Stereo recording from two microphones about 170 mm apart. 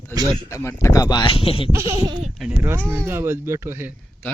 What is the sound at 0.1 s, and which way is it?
Speech, 20° right (ahead or behind).